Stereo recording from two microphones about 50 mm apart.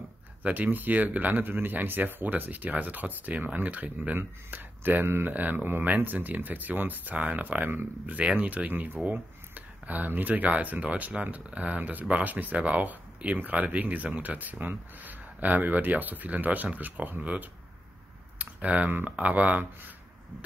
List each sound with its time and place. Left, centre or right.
0.4 s speech: right
5.0 s speech: right
5.3 s speech: right
18.4 s typing: right
18.9 s speech: right
19.1 s speech: right